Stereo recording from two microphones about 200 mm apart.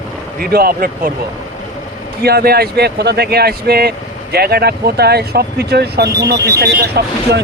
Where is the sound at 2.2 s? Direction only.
50° right (ahead or behind).